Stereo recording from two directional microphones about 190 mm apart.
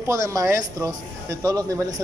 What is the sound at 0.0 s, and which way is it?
A man's voice, 15° right (ahead or behind).